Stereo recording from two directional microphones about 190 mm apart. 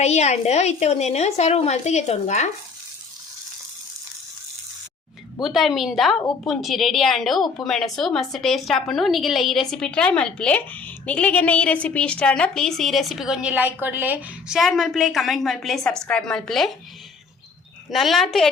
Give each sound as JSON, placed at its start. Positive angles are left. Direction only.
{"t": 0.0, "sound": "a woman's voice", "side_deg": 35}
{"t": 5.4, "sound": "a woman's voice", "side_deg": 0}
{"t": 17.9, "sound": "a woman's voice", "side_deg": 0}